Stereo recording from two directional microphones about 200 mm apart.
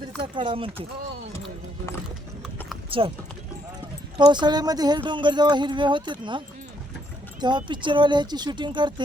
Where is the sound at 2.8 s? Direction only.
25° right (ahead or behind).